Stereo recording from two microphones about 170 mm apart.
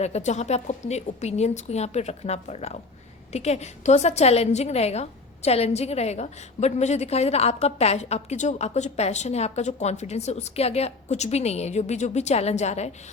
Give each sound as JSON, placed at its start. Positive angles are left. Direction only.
{"t": 0.0, "sound": "a woman's voice", "side_deg": 40}